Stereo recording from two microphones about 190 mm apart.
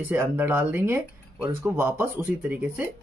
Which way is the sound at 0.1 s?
10° right (ahead or behind).